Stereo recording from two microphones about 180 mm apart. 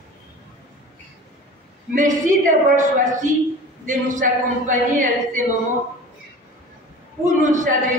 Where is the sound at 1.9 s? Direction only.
45° right (ahead or behind).